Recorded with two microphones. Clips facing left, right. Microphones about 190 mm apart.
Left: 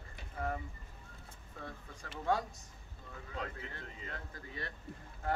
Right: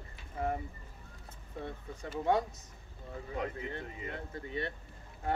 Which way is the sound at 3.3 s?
15° right (ahead or behind).